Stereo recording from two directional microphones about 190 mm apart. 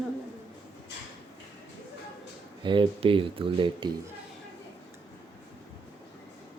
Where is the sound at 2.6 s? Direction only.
25° right (ahead or behind).